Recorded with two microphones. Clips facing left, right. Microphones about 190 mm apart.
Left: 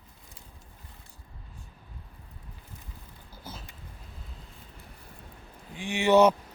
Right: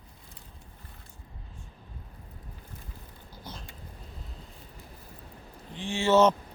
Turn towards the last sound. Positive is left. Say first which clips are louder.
# left 1 dB
turn(degrees=15)  # may be behind; listen again after turning